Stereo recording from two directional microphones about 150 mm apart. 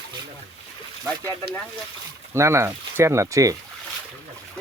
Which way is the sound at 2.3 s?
20° right (ahead or behind).